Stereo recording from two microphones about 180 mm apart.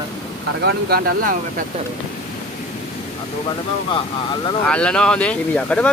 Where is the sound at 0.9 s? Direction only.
60° right (ahead or behind).